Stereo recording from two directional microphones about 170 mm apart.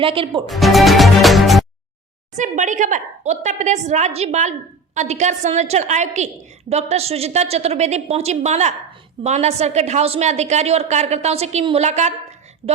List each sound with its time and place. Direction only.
0.0 s a woman's voice: 30° right (ahead or behind)
0.4 s speech: centre (ahead or behind)
2.3 s a woman's voice: 45° right (ahead or behind)